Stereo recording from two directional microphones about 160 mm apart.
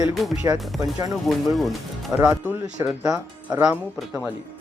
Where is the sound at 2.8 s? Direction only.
20° right (ahead or behind).